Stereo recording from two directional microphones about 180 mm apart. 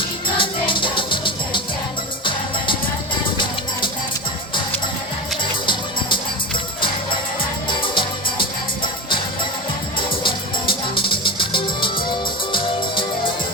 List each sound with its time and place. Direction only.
0.3 s music: 25° left (ahead or behind)
7.8 s music: 25° left (ahead or behind)
10.2 s music: 30° left (ahead or behind)